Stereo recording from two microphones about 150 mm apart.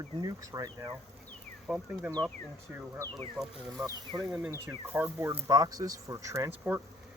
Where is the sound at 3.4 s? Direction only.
5° right (ahead or behind).